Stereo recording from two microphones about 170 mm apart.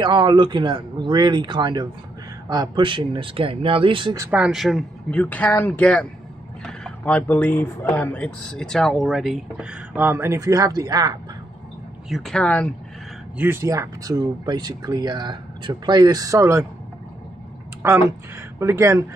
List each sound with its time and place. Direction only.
0.0 s speech: 25° right (ahead or behind)
4.2 s speech: 10° right (ahead or behind)
12.1 s speech: centre (ahead or behind)
13.4 s speech: 15° right (ahead or behind)
17.8 s speech: 15° right (ahead or behind)